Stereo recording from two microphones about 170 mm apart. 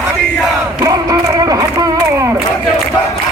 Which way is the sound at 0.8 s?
20° right (ahead or behind).